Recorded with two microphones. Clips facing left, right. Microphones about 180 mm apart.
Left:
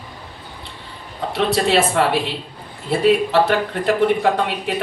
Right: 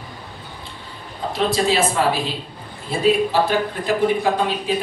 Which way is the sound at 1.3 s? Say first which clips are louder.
Left 2 dB; 70° left (ahead or behind).